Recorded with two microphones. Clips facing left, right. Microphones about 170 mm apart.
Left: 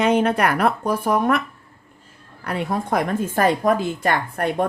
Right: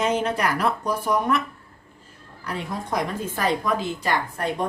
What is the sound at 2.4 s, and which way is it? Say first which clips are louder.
A woman's voice: left 6 dB; 60° left (ahead or behind).